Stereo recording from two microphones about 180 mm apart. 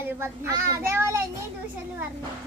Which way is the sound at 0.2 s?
15° right (ahead or behind).